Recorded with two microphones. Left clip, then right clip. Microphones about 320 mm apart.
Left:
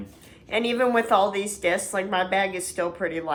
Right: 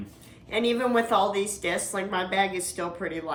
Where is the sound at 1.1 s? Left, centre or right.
Left.